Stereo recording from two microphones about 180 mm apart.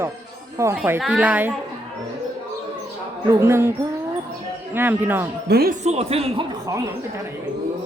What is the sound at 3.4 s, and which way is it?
Speech, 15° right (ahead or behind).